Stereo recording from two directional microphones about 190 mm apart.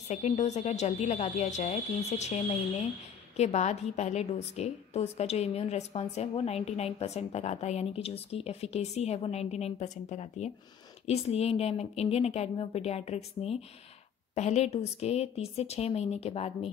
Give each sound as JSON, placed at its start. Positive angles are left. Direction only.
{"t": 0.1, "sound": "a woman's voice", "side_deg": 35}